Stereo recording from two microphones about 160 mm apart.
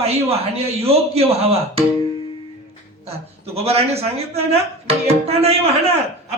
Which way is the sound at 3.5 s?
40° right (ahead or behind).